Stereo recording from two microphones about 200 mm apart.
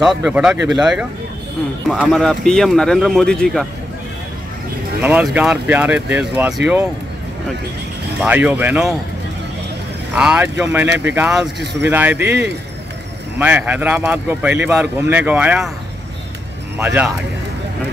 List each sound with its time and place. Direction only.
0.0 s a man's voice: 5° right (ahead or behind)
5.0 s a man's voice: 10° right (ahead or behind)
8.2 s a man's voice: 10° right (ahead or behind)
10.1 s a man's voice: 5° right (ahead or behind)
13.4 s a man's voice: 5° right (ahead or behind)
16.7 s a man's voice: 5° right (ahead or behind)